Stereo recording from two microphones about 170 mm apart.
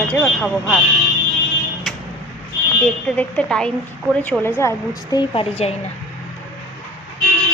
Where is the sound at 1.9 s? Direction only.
Centre (ahead or behind).